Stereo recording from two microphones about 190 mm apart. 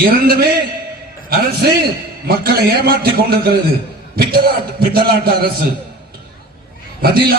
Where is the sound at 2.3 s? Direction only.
55° right (ahead or behind).